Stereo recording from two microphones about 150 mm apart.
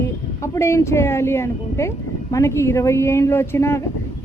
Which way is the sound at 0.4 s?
20° left (ahead or behind).